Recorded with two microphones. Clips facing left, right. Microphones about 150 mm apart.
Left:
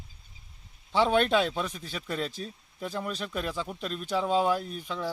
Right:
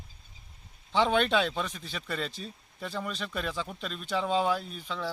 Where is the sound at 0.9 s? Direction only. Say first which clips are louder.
Left 2 dB; 10° left (ahead or behind).